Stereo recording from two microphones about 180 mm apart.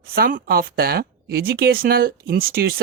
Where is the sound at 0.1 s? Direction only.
55° right (ahead or behind).